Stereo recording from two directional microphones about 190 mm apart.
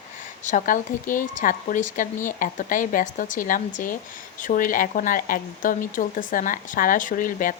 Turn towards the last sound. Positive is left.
turn(degrees=45)  # may be behind; listen again after turning